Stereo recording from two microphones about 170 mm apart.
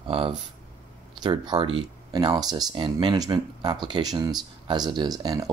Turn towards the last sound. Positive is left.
turn(degrees=-25)  # may be behind; listen again after turning